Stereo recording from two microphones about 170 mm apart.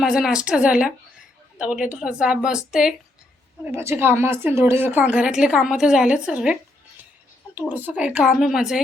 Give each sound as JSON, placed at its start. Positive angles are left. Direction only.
{"t": 0.0, "sound": "a woman's voice", "side_deg": 0}
{"t": 3.6, "sound": "a woman's voice", "side_deg": -15}